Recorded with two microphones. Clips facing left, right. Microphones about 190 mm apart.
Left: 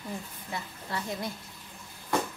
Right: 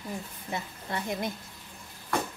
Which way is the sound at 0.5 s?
20° right (ahead or behind).